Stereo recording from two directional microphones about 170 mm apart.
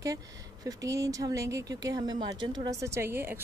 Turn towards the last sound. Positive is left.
turn(degrees=-15)  # may be behind; listen again after turning